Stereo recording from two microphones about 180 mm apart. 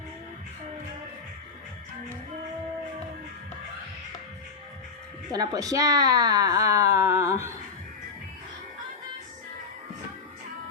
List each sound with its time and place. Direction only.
5.3 s speech: 20° right (ahead or behind)